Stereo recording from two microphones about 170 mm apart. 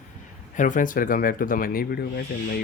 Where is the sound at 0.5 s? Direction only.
50° left (ahead or behind).